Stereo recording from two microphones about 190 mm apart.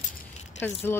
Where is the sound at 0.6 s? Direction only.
10° left (ahead or behind).